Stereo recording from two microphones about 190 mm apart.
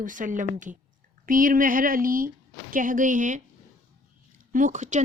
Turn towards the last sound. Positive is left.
turn(degrees=-40)  # may be behind; listen again after turning